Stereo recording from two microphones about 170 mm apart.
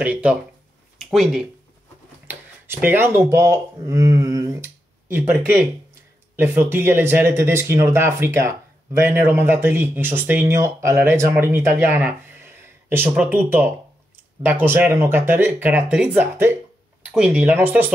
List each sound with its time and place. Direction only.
0.0 s speech: 5° right (ahead or behind)
2.2 s speech: 10° right (ahead or behind)